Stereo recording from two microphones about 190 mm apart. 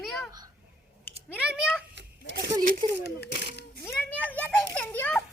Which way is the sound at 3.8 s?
10° left (ahead or behind).